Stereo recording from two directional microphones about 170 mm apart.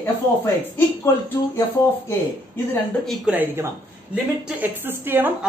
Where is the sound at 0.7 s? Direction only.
15° left (ahead or behind).